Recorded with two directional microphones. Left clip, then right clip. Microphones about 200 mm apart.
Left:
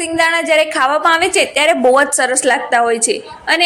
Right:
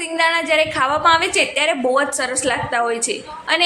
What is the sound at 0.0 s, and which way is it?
A woman's voice, 20° left (ahead or behind).